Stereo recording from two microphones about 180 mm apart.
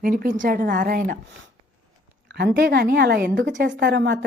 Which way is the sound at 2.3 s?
65° right (ahead or behind).